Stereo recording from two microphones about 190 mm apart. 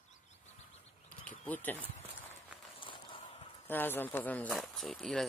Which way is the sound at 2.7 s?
25° left (ahead or behind).